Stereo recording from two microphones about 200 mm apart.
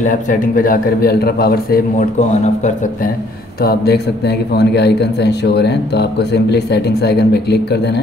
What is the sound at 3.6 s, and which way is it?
A man's voice, 50° left (ahead or behind).